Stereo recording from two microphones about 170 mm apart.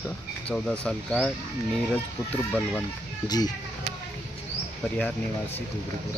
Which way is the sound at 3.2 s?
25° left (ahead or behind).